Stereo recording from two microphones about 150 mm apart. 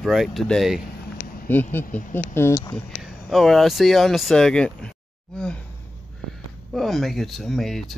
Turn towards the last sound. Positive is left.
turn(degrees=0)  # may be behind; listen again after turning